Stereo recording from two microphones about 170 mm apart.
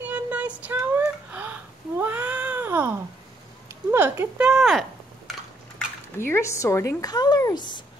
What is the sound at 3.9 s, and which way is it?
Speech, 15° right (ahead or behind).